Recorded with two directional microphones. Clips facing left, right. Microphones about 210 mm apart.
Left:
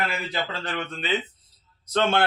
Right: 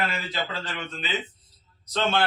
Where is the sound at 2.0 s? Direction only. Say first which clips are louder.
Left 3 dB; 55° left (ahead or behind).